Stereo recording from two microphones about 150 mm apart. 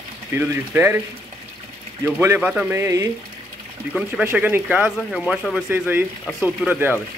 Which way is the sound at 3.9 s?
5° right (ahead or behind).